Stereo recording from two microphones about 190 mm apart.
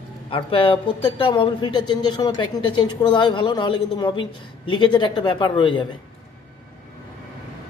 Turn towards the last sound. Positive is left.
turn(degrees=25)  # may be behind; listen again after turning